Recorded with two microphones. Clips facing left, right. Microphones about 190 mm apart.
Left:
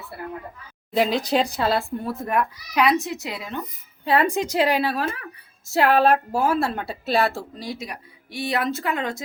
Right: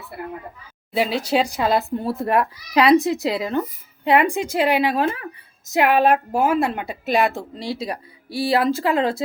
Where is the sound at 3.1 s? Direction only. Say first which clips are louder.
Right 9 dB; 90° right.